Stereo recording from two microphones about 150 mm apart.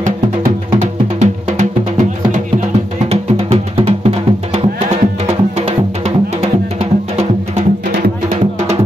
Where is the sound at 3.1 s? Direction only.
45° right (ahead or behind).